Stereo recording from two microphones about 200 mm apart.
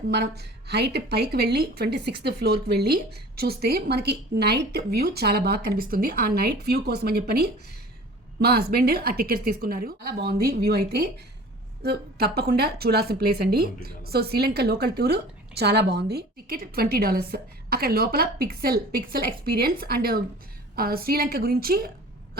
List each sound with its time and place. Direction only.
0.7 s a woman's voice: 55° right (ahead or behind)